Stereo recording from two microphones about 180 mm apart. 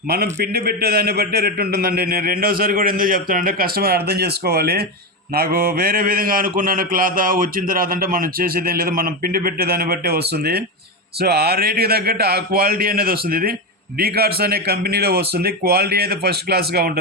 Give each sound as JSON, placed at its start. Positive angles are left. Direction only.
{"t": 0.1, "sound": "a man's voice", "side_deg": -60}